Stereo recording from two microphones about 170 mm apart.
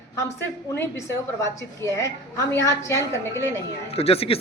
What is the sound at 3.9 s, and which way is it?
Speech, 35° left (ahead or behind).